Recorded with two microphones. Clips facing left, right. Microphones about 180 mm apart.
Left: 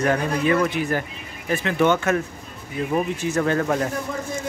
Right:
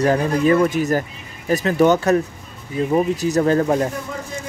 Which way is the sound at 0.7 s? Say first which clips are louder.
Right 5 dB; 40° right (ahead or behind).